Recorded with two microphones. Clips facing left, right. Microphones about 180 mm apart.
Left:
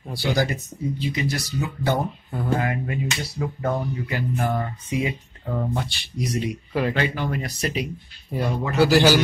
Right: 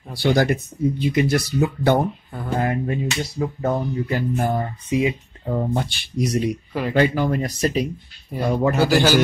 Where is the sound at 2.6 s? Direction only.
40° right (ahead or behind).